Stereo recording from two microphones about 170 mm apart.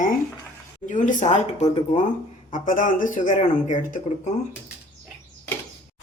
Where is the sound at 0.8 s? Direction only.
50° left (ahead or behind).